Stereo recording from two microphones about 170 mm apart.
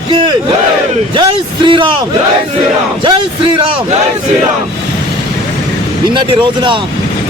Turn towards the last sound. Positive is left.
turn(degrees=-30)  # may be behind; listen again after turning